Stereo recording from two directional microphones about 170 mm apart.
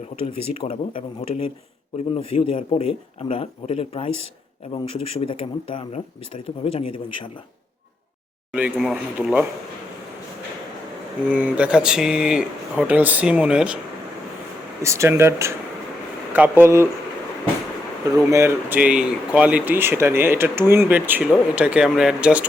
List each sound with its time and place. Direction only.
0.6 s speech: 30° left (ahead or behind)
2.1 s speech: 35° left (ahead or behind)
8.5 s speech: 5° right (ahead or behind)
11.3 s speech: 10° right (ahead or behind)
14.8 s speech: 15° right (ahead or behind)
18.2 s speech: 20° right (ahead or behind)